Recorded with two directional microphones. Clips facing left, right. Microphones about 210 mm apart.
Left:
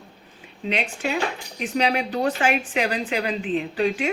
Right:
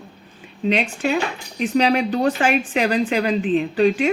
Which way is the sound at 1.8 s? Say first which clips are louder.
Right 4 dB; 35° right (ahead or behind).